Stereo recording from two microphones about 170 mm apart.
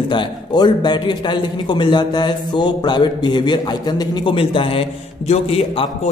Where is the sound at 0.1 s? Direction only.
25° left (ahead or behind).